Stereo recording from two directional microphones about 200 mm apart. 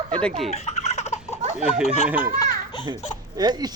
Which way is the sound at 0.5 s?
35° left (ahead or behind).